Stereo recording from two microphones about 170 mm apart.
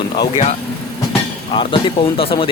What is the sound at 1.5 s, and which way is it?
Speech, 30° left (ahead or behind).